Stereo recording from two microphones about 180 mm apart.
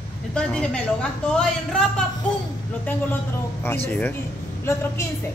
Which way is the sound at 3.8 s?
10° left (ahead or behind).